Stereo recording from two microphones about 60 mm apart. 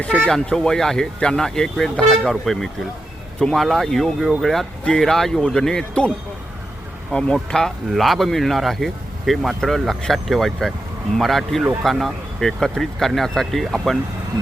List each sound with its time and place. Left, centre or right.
0.3 s speech: centre
3.3 s speech: centre